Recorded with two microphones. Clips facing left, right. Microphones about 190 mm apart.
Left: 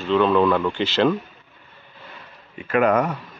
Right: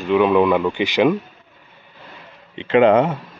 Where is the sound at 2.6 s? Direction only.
25° right (ahead or behind).